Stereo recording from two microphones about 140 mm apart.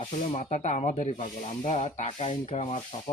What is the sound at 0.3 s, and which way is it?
Speech, 55° left (ahead or behind).